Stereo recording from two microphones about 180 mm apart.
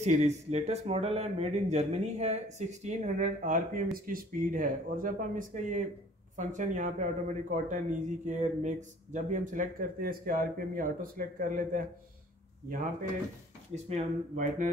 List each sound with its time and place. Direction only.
0.0 s a man's voice: 40° right (ahead or behind)
13.8 s a man's voice: 45° right (ahead or behind)